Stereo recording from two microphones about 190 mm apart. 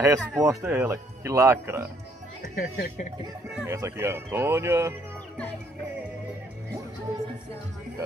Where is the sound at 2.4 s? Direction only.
50° left (ahead or behind).